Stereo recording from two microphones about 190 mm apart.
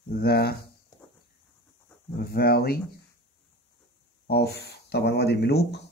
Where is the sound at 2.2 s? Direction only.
55° left (ahead or behind).